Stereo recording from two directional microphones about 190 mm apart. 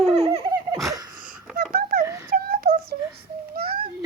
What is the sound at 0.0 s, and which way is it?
Laughter, 30° right (ahead or behind).